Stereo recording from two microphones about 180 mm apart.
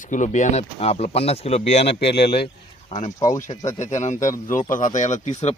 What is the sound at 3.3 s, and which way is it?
A man's voice, 45° left (ahead or behind).